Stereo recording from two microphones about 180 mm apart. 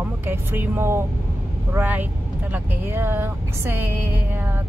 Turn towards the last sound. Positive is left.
turn(degrees=-10)  # may be behind; listen again after turning